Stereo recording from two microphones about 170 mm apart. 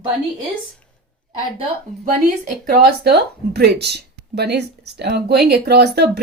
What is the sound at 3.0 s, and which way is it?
A woman's voice, 70° right (ahead or behind).